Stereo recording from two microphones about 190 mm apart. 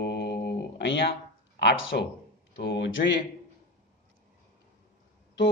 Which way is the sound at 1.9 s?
55° left (ahead or behind).